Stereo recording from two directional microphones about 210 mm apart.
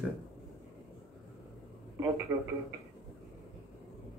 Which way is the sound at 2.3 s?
15° right (ahead or behind).